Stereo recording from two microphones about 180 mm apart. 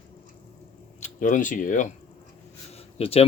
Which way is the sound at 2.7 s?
35° left (ahead or behind).